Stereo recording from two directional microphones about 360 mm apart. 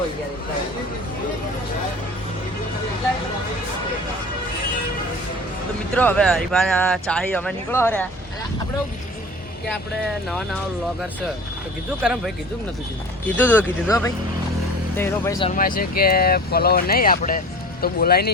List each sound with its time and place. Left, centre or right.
5.9 s speech: centre
12.0 s speech: centre; by 18.3 s left